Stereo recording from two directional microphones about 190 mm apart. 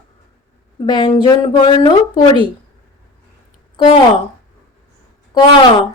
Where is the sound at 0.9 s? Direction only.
25° left (ahead or behind).